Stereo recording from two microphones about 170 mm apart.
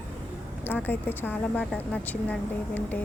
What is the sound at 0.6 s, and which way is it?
Speech, 10° left (ahead or behind).